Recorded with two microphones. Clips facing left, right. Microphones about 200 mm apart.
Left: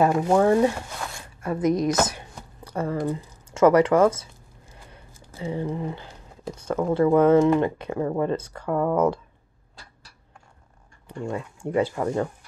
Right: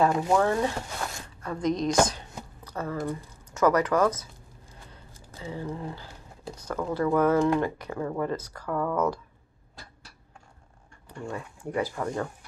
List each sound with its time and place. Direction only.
0.0 s speech: 25° left (ahead or behind)
1.6 s a woman's voice: 5° left (ahead or behind)
2.6 s speech: 25° left (ahead or behind)
5.3 s speech: 20° left (ahead or behind)
11.1 s speech: 25° left (ahead or behind)